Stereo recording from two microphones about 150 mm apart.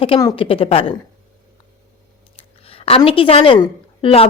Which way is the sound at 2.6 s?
40° left (ahead or behind).